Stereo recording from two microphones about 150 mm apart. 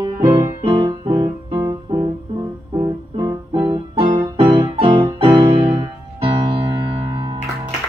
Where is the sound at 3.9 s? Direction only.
35° right (ahead or behind).